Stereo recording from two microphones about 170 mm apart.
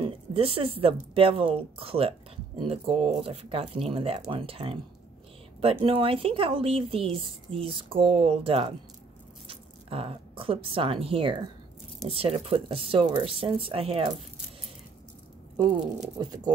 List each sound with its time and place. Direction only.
0.0 s a woman's voice: 35° right (ahead or behind)
15.5 s speech: 25° right (ahead or behind)